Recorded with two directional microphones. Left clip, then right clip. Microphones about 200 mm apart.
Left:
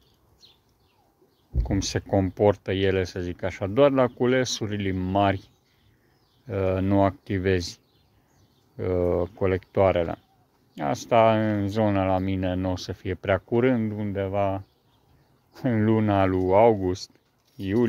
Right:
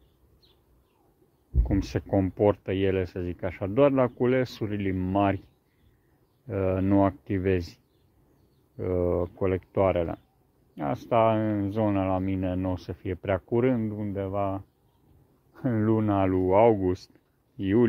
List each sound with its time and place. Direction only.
1.6 s speech: 15° left (ahead or behind)